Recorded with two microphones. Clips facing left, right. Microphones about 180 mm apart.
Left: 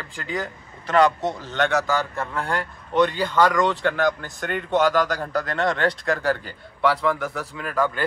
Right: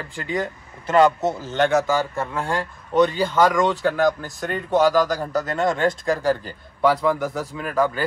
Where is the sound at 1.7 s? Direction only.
15° right (ahead or behind).